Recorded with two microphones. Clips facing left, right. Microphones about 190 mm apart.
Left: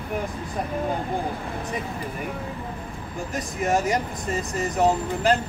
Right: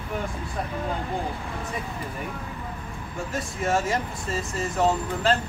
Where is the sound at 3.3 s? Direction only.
20° left (ahead or behind).